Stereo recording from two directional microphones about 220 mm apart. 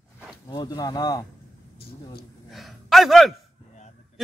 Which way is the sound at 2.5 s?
Centre (ahead or behind).